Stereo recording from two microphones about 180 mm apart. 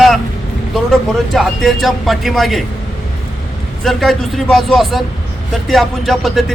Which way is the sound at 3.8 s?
Centre (ahead or behind).